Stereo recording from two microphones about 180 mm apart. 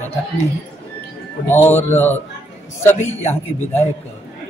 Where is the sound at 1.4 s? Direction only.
10° left (ahead or behind).